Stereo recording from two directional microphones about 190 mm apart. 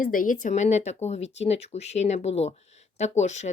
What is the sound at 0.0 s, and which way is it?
A woman's voice, 45° left (ahead or behind).